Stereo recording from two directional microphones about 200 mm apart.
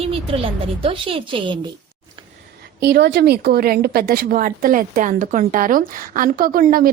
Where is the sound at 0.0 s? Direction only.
30° right (ahead or behind).